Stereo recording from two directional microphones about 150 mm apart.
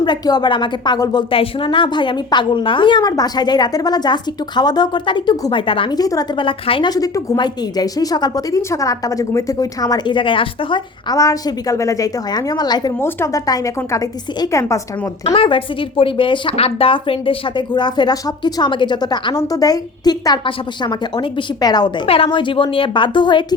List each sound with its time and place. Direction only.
0.0 s a woman's voice: 30° left (ahead or behind)
11.2 s a woman's voice: 20° left (ahead or behind)
15.4 s a woman's voice: 35° left (ahead or behind)